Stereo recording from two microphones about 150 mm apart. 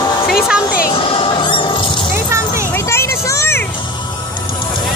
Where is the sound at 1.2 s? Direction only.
35° left (ahead or behind).